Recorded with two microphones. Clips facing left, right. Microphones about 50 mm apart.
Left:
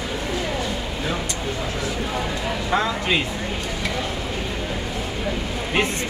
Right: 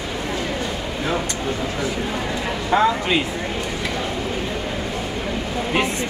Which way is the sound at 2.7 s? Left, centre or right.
Centre.